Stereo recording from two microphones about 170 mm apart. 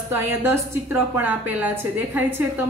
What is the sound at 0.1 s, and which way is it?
A woman's voice, 15° right (ahead or behind).